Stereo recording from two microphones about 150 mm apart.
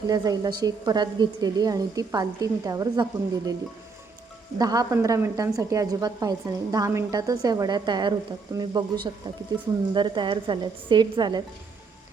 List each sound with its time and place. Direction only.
0.1 s speech: 25° right (ahead or behind)
4.5 s a woman's voice: 25° right (ahead or behind)